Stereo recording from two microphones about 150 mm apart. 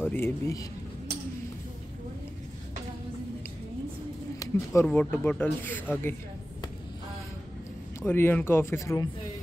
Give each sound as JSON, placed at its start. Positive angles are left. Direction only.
{"t": 0.1, "sound": "speech", "side_deg": 20}
{"t": 4.4, "sound": "a sound", "side_deg": 25}
{"t": 4.8, "sound": "speech", "side_deg": 10}
{"t": 8.0, "sound": "speech", "side_deg": 15}